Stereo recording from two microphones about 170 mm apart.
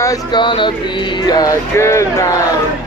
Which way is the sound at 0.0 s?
25° left (ahead or behind).